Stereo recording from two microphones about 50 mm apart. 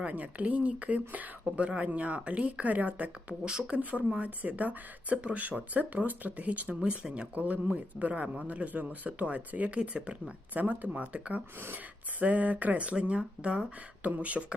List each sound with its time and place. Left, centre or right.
0.1 s speech: right
3.4 s speech: centre
3.8 s speech: right
6.7 s speech: centre
10.5 s speech: right